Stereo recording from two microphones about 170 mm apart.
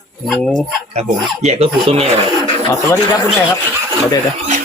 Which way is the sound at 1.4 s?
40° right (ahead or behind).